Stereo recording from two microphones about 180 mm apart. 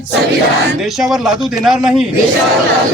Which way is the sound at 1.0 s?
Centre (ahead or behind).